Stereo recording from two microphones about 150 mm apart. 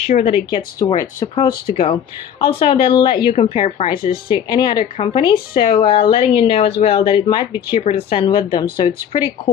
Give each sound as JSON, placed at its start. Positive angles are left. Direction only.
{"t": 0.0, "sound": "speech", "side_deg": 40}
{"t": 3.3, "sound": "speech", "side_deg": 40}